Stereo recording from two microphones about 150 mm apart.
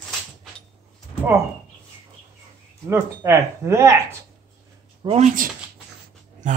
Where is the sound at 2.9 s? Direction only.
20° right (ahead or behind).